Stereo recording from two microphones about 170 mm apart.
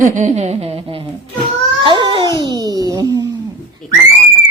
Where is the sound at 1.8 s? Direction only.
30° right (ahead or behind).